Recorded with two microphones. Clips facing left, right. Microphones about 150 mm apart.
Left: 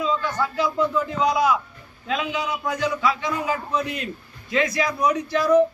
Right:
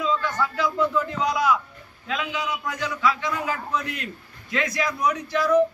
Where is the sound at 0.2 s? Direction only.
20° left (ahead or behind).